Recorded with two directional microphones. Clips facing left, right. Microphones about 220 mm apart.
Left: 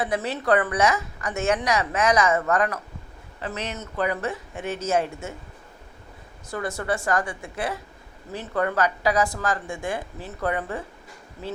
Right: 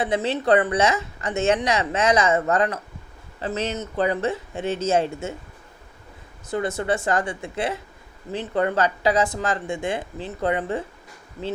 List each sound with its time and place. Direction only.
0.0 s a woman's voice: 25° right (ahead or behind)
6.5 s a woman's voice: 20° right (ahead or behind)